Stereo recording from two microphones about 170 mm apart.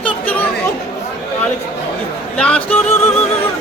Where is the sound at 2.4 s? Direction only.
5° left (ahead or behind).